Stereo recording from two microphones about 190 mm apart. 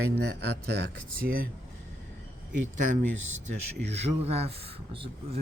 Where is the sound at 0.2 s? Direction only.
60° right (ahead or behind).